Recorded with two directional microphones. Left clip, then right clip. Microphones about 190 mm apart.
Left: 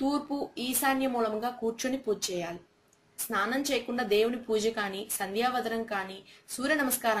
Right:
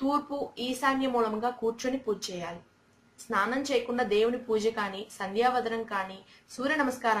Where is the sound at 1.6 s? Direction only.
40° left (ahead or behind).